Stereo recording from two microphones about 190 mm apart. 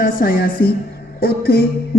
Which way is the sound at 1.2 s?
55° left (ahead or behind).